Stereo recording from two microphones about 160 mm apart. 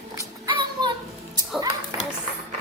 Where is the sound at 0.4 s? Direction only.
25° right (ahead or behind).